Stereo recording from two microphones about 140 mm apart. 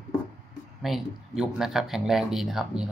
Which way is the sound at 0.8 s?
Centre (ahead or behind).